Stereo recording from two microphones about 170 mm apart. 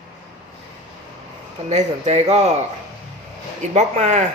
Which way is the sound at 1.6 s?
40° right (ahead or behind).